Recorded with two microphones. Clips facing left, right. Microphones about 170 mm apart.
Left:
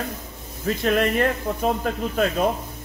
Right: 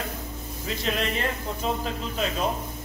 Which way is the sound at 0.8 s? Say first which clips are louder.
Left 8 dB; 55° left (ahead or behind).